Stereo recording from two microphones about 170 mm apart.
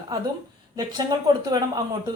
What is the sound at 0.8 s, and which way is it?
Speech, 25° right (ahead or behind).